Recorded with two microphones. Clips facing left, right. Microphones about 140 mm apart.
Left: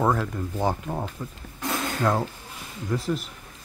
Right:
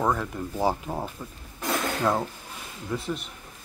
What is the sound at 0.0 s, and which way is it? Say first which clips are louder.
Speech: left 2 dB; 5° left (ahead or behind).